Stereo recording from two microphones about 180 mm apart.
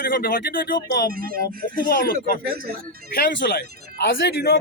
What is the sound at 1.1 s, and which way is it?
Speech, 55° right (ahead or behind).